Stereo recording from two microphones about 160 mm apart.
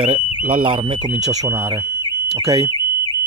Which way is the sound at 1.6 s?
20° right (ahead or behind).